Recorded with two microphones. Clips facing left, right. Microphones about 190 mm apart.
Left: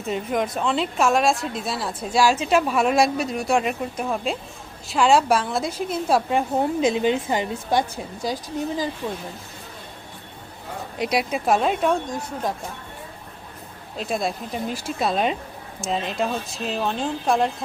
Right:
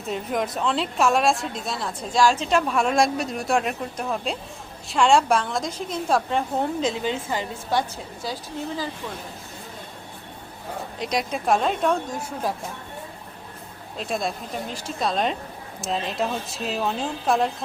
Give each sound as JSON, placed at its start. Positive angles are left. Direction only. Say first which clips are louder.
{"t": 0.1, "sound": "a woman's voice", "louder": "left 2 dB", "side_deg": 0}
{"t": 11.0, "sound": "a woman's voice", "louder": "left 3 dB", "side_deg": 5}
{"t": 14.0, "sound": "a woman's voice", "louder": "left 2 dB", "side_deg": 0}